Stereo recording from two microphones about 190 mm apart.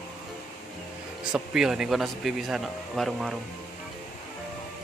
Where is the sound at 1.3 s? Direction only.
5° right (ahead or behind).